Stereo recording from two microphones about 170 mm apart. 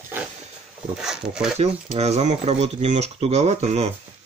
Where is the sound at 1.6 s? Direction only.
40° right (ahead or behind).